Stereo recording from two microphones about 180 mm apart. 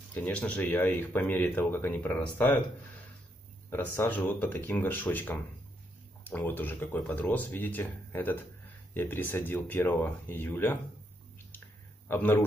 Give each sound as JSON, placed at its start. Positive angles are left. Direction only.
{"t": 0.1, "sound": "speech", "side_deg": 10}
{"t": 3.7, "sound": "speech", "side_deg": 10}
{"t": 12.1, "sound": "speech", "side_deg": 10}